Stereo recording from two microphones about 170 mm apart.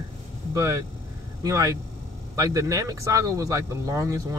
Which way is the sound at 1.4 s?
20° right (ahead or behind).